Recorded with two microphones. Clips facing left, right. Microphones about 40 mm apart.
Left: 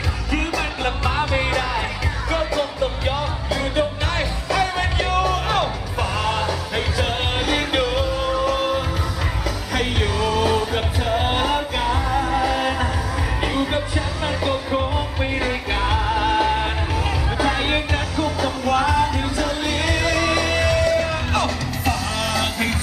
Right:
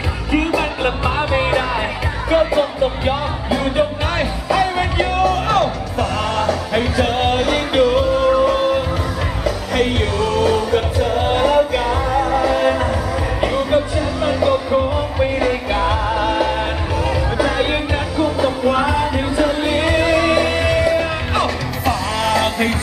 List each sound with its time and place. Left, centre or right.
0.3 s music: right; by 17.7 s centre
18.1 s music: centre
21.8 s music: centre